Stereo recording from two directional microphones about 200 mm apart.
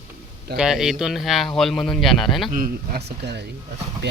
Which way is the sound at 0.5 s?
5° right (ahead or behind).